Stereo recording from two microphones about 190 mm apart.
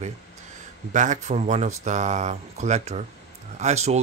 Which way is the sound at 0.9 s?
40° right (ahead or behind).